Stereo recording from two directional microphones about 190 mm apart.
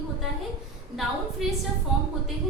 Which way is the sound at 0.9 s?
Centre (ahead or behind).